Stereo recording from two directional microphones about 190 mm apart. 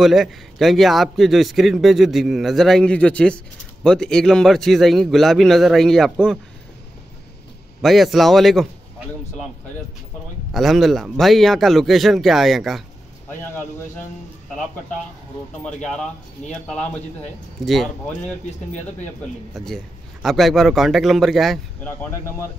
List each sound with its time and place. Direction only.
0.0 s a man's voice: centre (ahead or behind)
7.8 s a man's voice: centre (ahead or behind)
10.5 s a man's voice: centre (ahead or behind)
15.6 s a man's voice: 5° left (ahead or behind)
19.5 s a man's voice: centre (ahead or behind)